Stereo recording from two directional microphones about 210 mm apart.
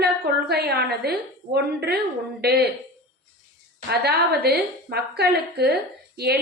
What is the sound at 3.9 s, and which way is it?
A woman's voice, 50° right (ahead or behind).